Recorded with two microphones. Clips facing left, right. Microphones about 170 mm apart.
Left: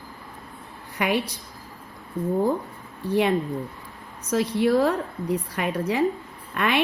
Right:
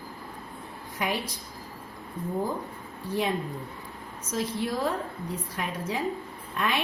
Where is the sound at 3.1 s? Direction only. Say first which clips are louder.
Left 7 dB; 65° left (ahead or behind).